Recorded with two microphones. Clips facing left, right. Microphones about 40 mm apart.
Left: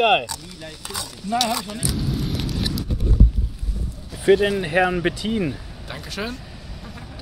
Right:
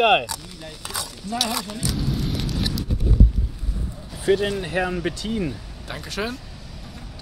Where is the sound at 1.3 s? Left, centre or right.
Centre.